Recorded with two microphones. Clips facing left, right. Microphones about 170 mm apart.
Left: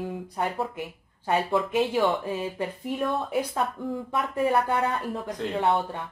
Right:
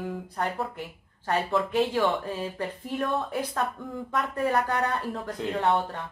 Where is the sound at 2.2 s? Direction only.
15° left (ahead or behind); by 5.6 s 5° right (ahead or behind).